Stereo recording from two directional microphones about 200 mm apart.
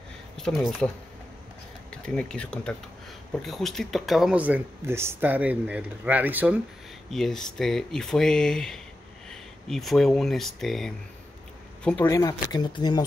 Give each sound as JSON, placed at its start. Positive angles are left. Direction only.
{"t": 0.4, "sound": "speech", "side_deg": 0}
{"t": 12.1, "sound": "speech", "side_deg": 15}